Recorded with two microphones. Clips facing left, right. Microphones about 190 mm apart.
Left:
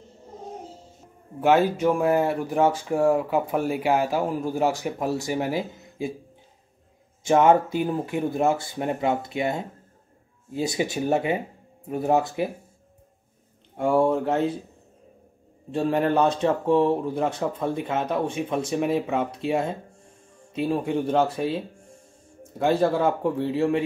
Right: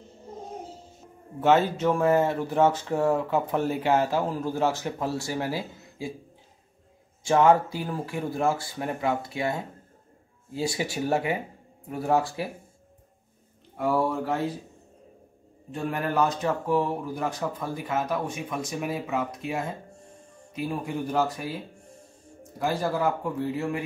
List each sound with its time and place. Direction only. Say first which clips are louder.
1.4 s speech: left 2 dB; 10° left (ahead or behind)
7.2 s speech: left 2 dB; 20° left (ahead or behind)
13.7 s speech: left 5 dB; 25° left (ahead or behind)
15.7 s speech: left 6 dB; 30° left (ahead or behind)